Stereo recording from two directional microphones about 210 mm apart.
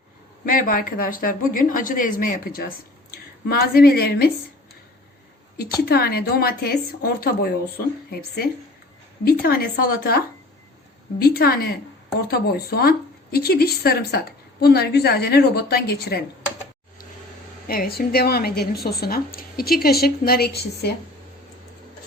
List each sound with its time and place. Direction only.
0.4 s speech: 40° left (ahead or behind)
5.5 s speech: 45° left (ahead or behind)
9.2 s speech: 45° left (ahead or behind)
17.7 s speech: 45° left (ahead or behind)